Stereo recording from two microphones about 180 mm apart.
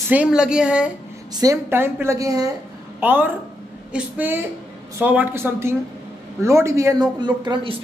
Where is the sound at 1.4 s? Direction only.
15° right (ahead or behind).